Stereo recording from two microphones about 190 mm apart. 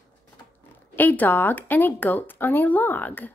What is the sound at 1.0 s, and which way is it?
Speech, 10° left (ahead or behind).